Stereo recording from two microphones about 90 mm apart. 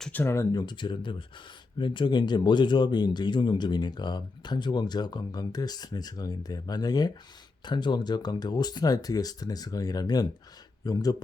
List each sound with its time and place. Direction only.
0.1 s speech: 20° left (ahead or behind)
0.5 s speech: 55° left (ahead or behind)